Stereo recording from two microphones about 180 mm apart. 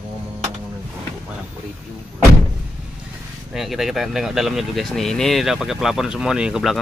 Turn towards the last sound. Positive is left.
turn(degrees=0)  # may be behind; listen again after turning